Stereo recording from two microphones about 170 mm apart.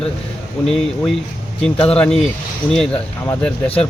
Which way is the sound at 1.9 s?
5° left (ahead or behind).